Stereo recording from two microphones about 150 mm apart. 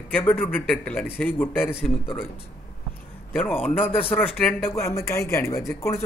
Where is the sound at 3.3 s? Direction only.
10° left (ahead or behind).